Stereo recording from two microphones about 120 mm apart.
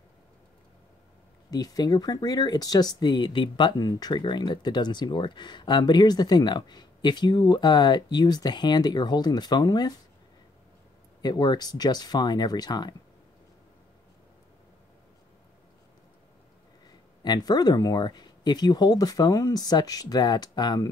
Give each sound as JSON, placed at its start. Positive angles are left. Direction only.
{"t": 1.5, "sound": "speech", "side_deg": 35}
{"t": 11.1, "sound": "speech", "side_deg": 35}
{"t": 17.2, "sound": "speech", "side_deg": 35}